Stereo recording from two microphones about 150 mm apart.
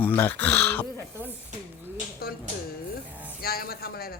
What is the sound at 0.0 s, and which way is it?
Speech, 10° left (ahead or behind).